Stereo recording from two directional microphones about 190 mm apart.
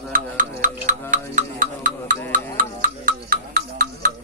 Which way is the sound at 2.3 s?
45° right (ahead or behind).